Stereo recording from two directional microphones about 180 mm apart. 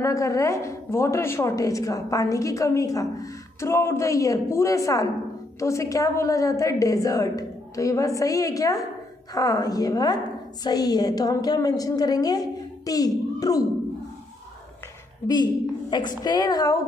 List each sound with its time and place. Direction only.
0.0 s a woman's voice: 15° left (ahead or behind)
15.2 s a woman's voice: 25° left (ahead or behind)